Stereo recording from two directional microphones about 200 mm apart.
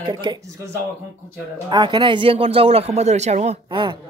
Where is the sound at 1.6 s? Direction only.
25° right (ahead or behind).